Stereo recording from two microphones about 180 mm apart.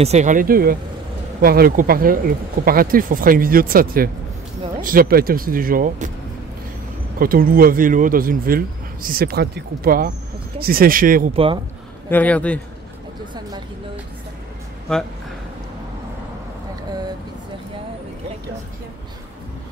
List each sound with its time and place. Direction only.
0.0 s speech: 40° right (ahead or behind)
7.2 s speech: 55° right (ahead or behind)
11.3 s speech: 30° right (ahead or behind)
12.1 s a man's voice: 10° left (ahead or behind)